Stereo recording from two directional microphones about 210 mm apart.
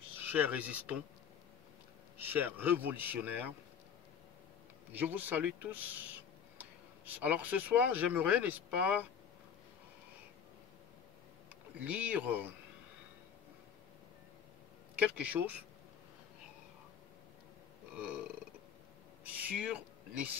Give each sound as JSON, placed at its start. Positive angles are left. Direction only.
{"t": 0.2, "sound": "speech", "side_deg": -10}
{"t": 2.1, "sound": "speech", "side_deg": -10}
{"t": 4.9, "sound": "speech", "side_deg": -10}
{"t": 11.8, "sound": "speech", "side_deg": -5}
{"t": 15.0, "sound": "speech", "side_deg": -5}
{"t": 17.9, "sound": "burping", "side_deg": -5}
{"t": 19.2, "sound": "a sound", "side_deg": -5}